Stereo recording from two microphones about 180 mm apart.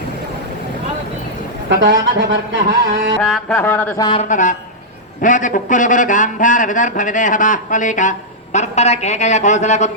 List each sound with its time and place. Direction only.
1.7 s speech: 75° right (ahead or behind)
3.2 s a sound: 10° left (ahead or behind)
4.2 s speech: 45° left (ahead or behind)